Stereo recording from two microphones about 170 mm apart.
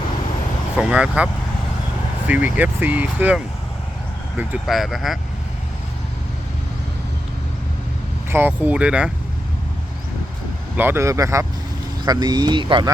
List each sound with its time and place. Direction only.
0.8 s speech: 5° right (ahead or behind)
8.3 s speech: 10° right (ahead or behind)
10.8 s speech: 15° right (ahead or behind); by 12.9 s 30° right (ahead or behind)